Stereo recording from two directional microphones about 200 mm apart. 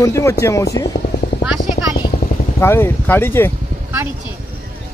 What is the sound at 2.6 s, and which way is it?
Speech, 10° left (ahead or behind).